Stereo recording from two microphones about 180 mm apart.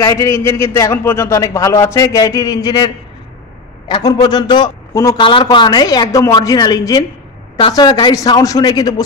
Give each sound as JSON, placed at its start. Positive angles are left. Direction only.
{"t": 0.0, "sound": "a man's voice", "side_deg": 15}